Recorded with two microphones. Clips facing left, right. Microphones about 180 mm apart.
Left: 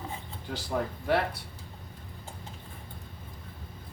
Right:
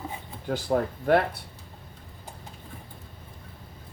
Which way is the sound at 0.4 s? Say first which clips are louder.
Right 7 dB; 50° right (ahead or behind).